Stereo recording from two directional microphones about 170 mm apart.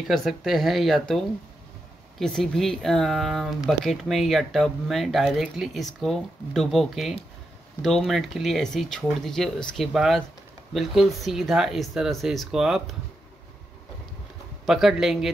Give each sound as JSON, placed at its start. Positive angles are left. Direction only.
{"t": 0.1, "sound": "speech", "side_deg": 0}
{"t": 14.7, "sound": "speech", "side_deg": 0}